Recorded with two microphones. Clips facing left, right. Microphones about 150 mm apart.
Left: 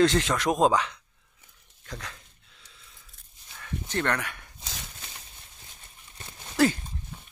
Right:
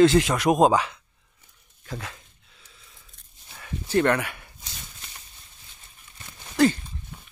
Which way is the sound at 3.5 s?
10° right (ahead or behind).